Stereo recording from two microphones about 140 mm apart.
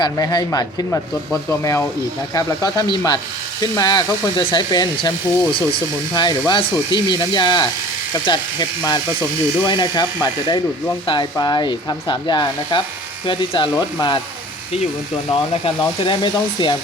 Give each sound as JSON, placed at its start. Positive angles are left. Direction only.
{"t": 0.0, "sound": "speech", "side_deg": 30}
{"t": 15.3, "sound": "speech", "side_deg": 40}